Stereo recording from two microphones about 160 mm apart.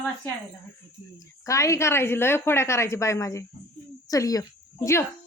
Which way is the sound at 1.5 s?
20° left (ahead or behind).